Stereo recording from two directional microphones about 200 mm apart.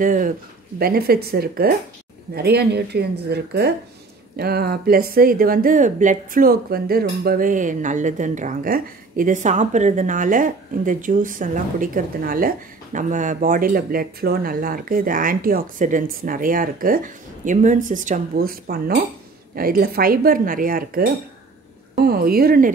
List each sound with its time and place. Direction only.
0.0 s speech: 40° right (ahead or behind)